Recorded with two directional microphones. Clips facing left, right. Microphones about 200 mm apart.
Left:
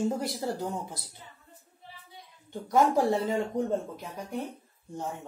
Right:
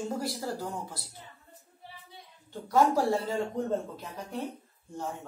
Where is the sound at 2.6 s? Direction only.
20° left (ahead or behind).